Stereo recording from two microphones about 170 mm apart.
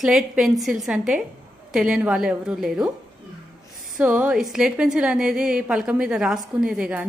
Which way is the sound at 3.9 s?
10° right (ahead or behind).